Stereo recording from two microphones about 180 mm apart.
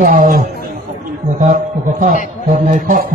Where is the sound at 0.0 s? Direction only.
50° right (ahead or behind).